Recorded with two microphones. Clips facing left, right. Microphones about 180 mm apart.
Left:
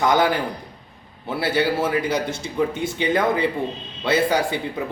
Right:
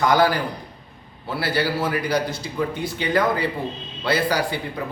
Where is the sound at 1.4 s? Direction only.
20° left (ahead or behind).